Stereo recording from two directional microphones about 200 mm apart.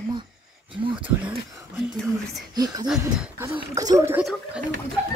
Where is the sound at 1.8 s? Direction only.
Centre (ahead or behind).